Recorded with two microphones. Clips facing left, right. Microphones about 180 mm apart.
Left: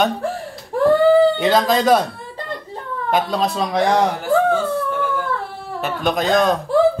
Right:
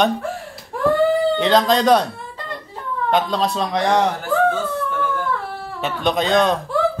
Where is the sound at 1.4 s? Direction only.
5° left (ahead or behind).